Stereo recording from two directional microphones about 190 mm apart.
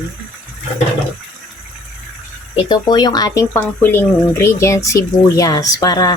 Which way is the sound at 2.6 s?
20° left (ahead or behind).